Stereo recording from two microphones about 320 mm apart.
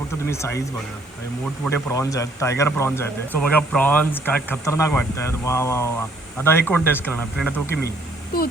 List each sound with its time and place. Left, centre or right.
0.3 s speech: centre
1.6 s speech: centre
7.9 s a sound: left